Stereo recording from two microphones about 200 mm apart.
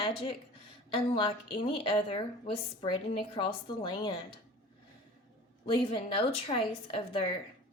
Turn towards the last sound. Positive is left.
turn(degrees=25)  # may be behind; listen again after turning